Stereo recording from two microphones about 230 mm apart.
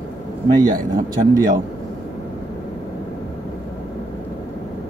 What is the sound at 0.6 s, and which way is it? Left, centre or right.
Speech, centre.